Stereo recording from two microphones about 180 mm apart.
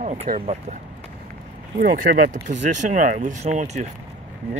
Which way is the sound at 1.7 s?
55° right (ahead or behind).